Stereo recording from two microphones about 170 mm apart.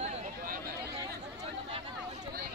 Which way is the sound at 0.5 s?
60° right (ahead or behind).